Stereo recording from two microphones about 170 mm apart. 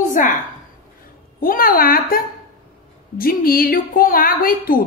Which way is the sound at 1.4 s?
55° left (ahead or behind).